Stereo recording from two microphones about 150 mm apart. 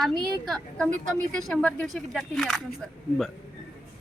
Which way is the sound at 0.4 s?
5° left (ahead or behind).